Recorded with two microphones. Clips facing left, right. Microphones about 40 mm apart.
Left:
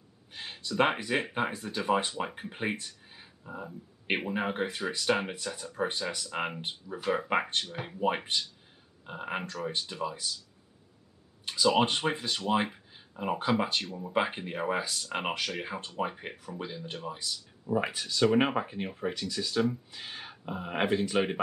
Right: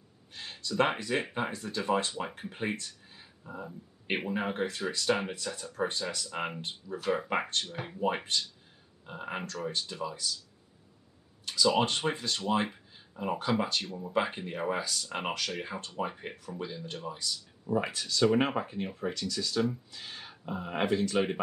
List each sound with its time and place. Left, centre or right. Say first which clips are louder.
0.3 s a sound: even; centre
1.3 s speech: left 2 dB; centre
11.4 s speech: left 1 dB; centre